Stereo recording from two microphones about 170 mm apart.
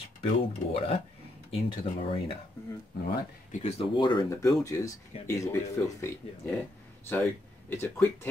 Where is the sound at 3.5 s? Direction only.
35° left (ahead or behind); by 5.5 s 20° left (ahead or behind).